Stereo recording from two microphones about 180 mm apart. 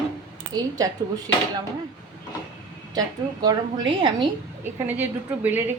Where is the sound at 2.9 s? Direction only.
20° right (ahead or behind).